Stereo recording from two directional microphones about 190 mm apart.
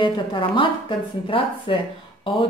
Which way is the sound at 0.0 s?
25° left (ahead or behind).